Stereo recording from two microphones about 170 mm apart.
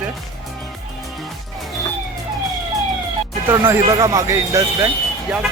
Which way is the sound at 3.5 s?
15° right (ahead or behind).